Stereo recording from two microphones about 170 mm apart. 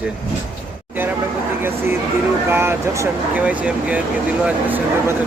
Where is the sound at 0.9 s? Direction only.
10° right (ahead or behind).